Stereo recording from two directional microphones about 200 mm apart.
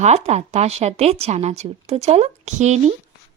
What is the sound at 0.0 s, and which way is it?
Speech, 35° right (ahead or behind).